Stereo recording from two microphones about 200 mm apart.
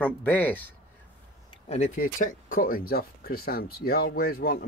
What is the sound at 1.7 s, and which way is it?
Speech, 40° left (ahead or behind).